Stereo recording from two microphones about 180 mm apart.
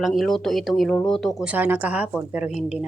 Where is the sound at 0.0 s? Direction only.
Centre (ahead or behind).